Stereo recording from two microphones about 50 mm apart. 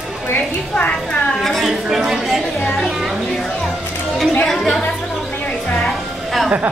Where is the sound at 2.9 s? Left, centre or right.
Centre.